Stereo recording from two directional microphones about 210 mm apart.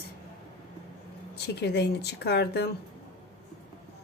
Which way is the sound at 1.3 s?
50° left (ahead or behind).